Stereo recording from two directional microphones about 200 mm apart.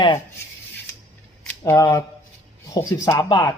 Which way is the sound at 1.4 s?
15° left (ahead or behind).